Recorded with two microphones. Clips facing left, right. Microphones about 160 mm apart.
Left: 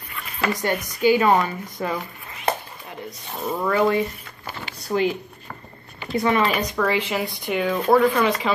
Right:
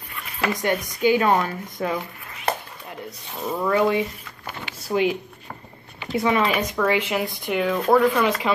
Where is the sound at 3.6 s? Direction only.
Centre (ahead or behind).